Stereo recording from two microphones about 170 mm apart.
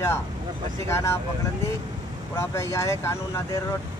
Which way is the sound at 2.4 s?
15° left (ahead or behind).